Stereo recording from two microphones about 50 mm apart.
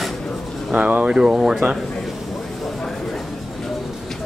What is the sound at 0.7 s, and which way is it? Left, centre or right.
Speech, right.